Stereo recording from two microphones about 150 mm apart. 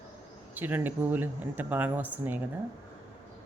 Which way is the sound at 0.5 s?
10° right (ahead or behind).